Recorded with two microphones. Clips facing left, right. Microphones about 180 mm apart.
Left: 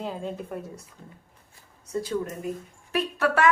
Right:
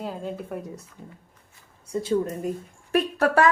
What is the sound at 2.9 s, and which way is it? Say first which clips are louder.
Speech: right 4 dB; 40° right (ahead or behind).